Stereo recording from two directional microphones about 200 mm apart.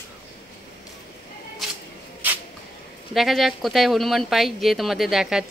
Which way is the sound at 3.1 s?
Centre (ahead or behind).